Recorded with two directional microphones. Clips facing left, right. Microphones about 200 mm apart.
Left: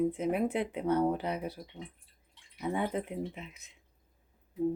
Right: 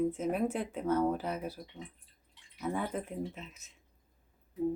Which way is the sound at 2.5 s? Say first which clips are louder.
Left 2 dB; 15° left (ahead or behind).